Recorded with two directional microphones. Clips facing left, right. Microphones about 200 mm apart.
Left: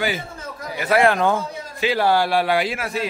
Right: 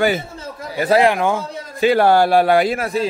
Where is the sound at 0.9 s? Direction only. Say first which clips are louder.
Right 1 dB; 15° right (ahead or behind).